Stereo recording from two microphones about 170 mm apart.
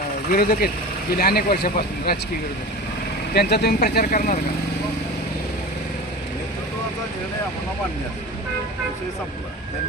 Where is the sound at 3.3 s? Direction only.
70° left (ahead or behind).